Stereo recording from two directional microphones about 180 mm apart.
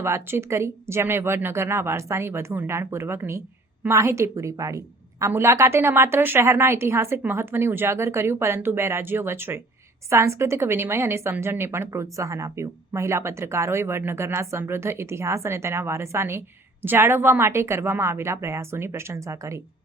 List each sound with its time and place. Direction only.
0.0 s a woman's voice: 15° right (ahead or behind)